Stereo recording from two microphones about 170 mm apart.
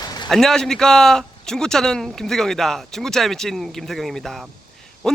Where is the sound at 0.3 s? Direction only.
Centre (ahead or behind).